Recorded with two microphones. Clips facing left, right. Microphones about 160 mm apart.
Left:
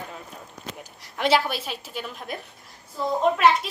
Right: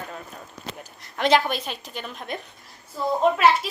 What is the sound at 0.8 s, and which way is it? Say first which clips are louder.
A woman's voice: right 1 dB; 10° left (ahead or behind).